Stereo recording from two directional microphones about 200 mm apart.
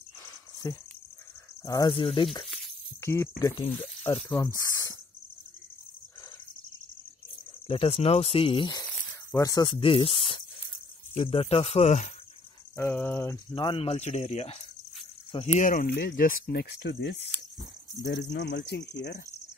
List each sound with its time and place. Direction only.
1.6 s speech: 20° left (ahead or behind)
2.4 s a sound: centre (ahead or behind)
3.0 s speech: 15° left (ahead or behind)
7.6 s speech: 30° left (ahead or behind)
12.7 s speech: 10° left (ahead or behind)
13.5 s speech: 25° left (ahead or behind); by 19.2 s 60° left (ahead or behind)